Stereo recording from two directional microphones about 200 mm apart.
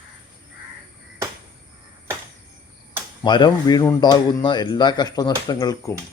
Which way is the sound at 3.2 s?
20° left (ahead or behind).